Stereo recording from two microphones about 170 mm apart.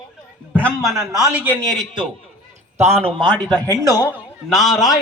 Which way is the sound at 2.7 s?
35° right (ahead or behind).